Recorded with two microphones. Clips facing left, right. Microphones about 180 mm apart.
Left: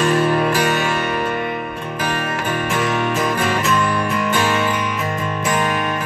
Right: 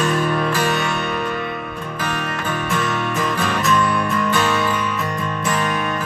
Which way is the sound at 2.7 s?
15° left (ahead or behind).